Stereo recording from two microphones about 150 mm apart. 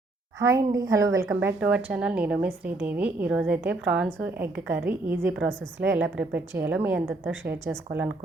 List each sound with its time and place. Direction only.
0.3 s a woman's voice: 20° right (ahead or behind)
1.3 s a woman's voice: 10° right (ahead or behind)